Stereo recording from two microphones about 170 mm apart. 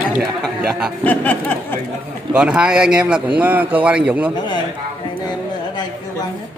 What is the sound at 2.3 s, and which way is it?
A man's voice, 5° right (ahead or behind).